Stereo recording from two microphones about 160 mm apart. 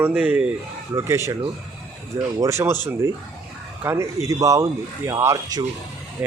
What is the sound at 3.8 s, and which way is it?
Speech, 15° right (ahead or behind).